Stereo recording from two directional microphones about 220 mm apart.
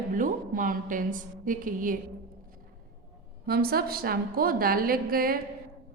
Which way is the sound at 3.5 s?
45° right (ahead or behind).